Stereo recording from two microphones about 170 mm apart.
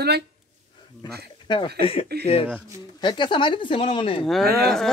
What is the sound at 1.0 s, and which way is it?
Speech, 25° left (ahead or behind).